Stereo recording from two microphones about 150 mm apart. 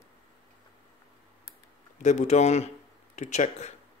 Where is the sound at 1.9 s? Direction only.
55° left (ahead or behind).